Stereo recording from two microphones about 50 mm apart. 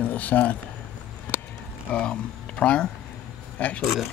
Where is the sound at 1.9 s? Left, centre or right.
Left.